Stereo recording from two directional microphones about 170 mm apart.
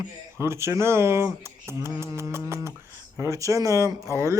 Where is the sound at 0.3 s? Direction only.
15° right (ahead or behind).